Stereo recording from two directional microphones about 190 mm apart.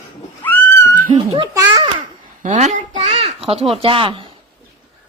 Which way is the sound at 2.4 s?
40° right (ahead or behind).